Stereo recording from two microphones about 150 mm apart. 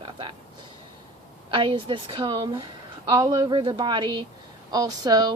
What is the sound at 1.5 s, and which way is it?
A woman's voice, 35° right (ahead or behind).